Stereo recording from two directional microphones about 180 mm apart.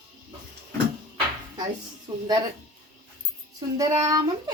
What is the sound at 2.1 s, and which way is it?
Speech, 15° right (ahead or behind).